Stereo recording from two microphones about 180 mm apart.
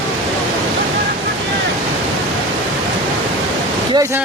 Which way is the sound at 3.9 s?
15° right (ahead or behind).